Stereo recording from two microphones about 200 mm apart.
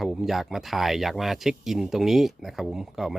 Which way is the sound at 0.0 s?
Centre (ahead or behind).